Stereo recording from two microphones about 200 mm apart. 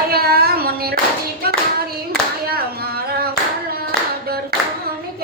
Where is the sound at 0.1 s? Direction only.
50° right (ahead or behind).